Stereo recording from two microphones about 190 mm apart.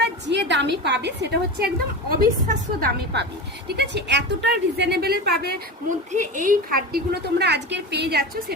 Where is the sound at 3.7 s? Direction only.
60° right (ahead or behind).